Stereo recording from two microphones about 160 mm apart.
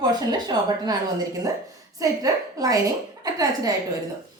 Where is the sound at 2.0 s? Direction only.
20° right (ahead or behind).